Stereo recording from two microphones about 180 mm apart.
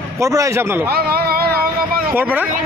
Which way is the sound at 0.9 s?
60° right (ahead or behind).